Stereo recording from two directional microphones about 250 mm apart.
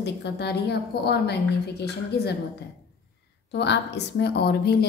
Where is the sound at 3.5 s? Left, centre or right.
Left.